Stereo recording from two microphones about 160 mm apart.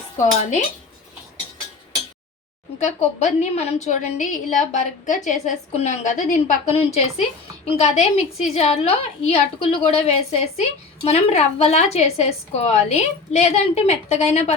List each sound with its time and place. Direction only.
2.7 s a woman's voice: 45° left (ahead or behind)